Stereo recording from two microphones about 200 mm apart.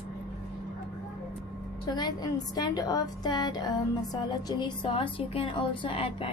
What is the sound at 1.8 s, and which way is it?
A woman's voice, 20° left (ahead or behind).